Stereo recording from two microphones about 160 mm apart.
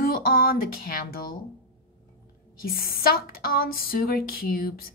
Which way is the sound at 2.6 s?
65° left (ahead or behind).